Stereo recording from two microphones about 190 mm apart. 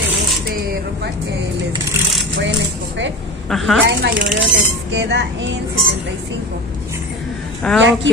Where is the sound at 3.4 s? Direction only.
Centre (ahead or behind).